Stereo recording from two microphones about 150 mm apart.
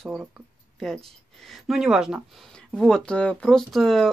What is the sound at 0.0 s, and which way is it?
Speech, centre (ahead or behind).